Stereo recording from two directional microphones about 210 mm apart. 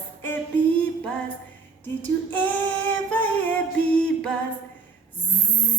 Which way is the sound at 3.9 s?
5° left (ahead or behind).